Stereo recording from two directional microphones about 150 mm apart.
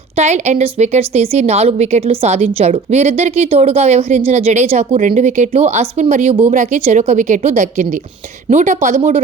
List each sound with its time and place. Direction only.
0.2 s a woman's voice: 50° right (ahead or behind)